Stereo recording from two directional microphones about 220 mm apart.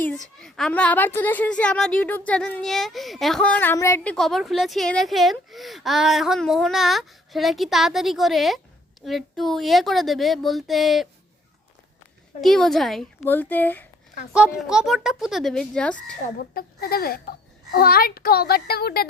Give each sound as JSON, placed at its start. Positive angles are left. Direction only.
{"t": 0.4, "sound": "a woman's voice", "side_deg": 0}
{"t": 12.4, "sound": "a woman's voice", "side_deg": 0}
{"t": 14.3, "sound": "a woman's voice", "side_deg": -5}
{"t": 16.4, "sound": "a child's voice", "side_deg": 45}